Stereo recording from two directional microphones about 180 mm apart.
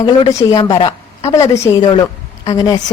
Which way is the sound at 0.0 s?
20° left (ahead or behind).